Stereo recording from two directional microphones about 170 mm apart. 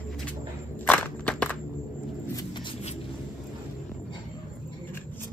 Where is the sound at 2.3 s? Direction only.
25° left (ahead or behind).